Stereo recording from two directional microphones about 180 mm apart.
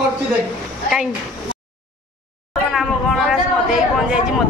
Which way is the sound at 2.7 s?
Centre (ahead or behind).